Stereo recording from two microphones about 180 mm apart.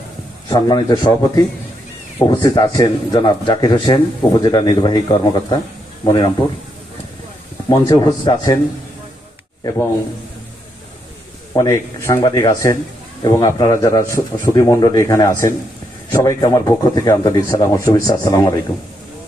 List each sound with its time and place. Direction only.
0.4 s speech: 20° left (ahead or behind)
7.7 s speech: 25° left (ahead or behind)
11.5 s speech: 20° left (ahead or behind)